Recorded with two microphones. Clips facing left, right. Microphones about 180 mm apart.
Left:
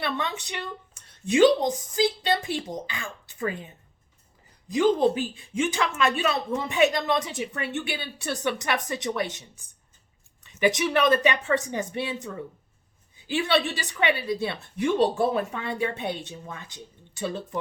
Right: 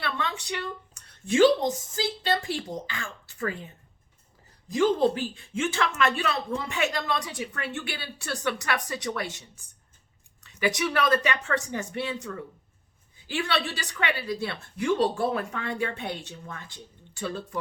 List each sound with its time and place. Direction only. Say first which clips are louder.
0.0 s a sound: left 2 dB; 20° left (ahead or behind)
1.2 s a woman's voice: left 1 dB; 20° left (ahead or behind)
10.4 s a woman's voice: left 3 dB; 20° left (ahead or behind)